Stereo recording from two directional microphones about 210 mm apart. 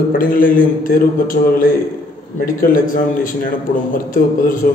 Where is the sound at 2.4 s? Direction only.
40° left (ahead or behind).